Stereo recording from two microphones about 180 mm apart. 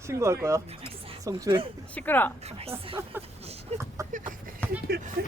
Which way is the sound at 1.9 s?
10° left (ahead or behind).